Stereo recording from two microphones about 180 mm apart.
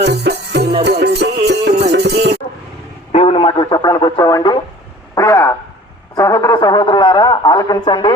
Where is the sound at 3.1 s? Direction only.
30° left (ahead or behind).